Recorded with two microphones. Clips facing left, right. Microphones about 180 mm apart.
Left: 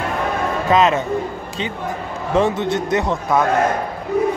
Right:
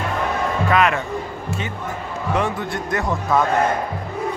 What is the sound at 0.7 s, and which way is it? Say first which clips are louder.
Speech: left 3 dB; 25° left (ahead or behind).